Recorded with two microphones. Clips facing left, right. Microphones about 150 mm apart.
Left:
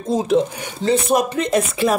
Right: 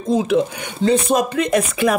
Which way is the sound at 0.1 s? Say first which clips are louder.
Even; 35° left (ahead or behind).